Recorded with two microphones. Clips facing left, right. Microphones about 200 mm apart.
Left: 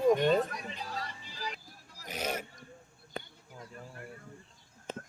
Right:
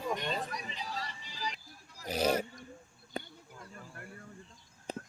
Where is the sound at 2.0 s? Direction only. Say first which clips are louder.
Right 6 dB; 35° right (ahead or behind).